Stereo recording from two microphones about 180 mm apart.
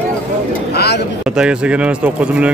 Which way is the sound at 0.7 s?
65° left (ahead or behind).